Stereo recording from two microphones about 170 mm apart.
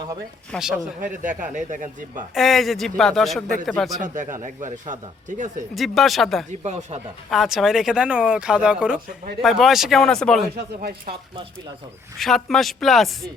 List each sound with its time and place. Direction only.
0.5 s a man's voice: centre (ahead or behind)
1.0 s speech: 50° right (ahead or behind)
2.3 s a man's voice: centre (ahead or behind)
4.0 s speech: 50° right (ahead or behind)
5.7 s a man's voice: centre (ahead or behind)
6.5 s speech: 40° right (ahead or behind)
7.3 s a man's voice: centre (ahead or behind)
10.8 s speech: 60° right (ahead or behind)
12.1 s a man's voice: centre (ahead or behind)